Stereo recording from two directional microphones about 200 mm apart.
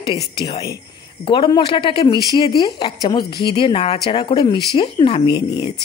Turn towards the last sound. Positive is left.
turn(degrees=20)  # may be behind; listen again after turning